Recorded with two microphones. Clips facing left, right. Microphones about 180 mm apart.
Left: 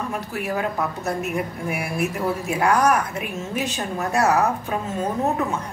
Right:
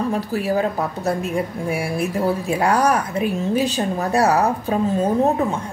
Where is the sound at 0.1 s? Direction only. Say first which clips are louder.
Right 6 dB; 35° right (ahead or behind).